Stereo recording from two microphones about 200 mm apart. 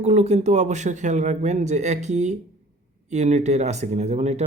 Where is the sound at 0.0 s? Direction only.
35° right (ahead or behind).